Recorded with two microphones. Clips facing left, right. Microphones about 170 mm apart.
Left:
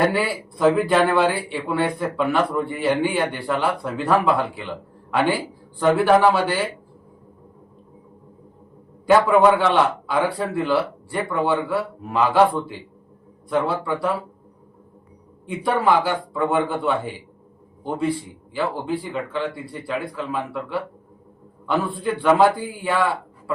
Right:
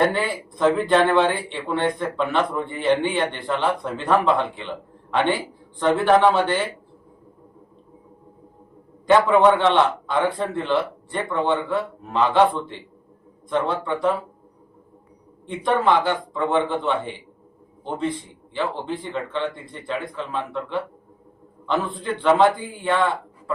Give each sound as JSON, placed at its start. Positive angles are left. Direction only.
{"t": 0.1, "sound": "a man's voice", "side_deg": 5}
{"t": 9.5, "sound": "a man's voice", "side_deg": 5}
{"t": 15.4, "sound": "speech", "side_deg": 10}